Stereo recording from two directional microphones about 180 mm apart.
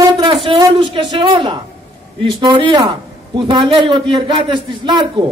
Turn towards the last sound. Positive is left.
turn(degrees=-25)  # may be behind; listen again after turning